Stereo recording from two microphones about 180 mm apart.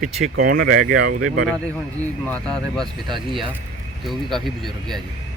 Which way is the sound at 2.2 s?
5° left (ahead or behind).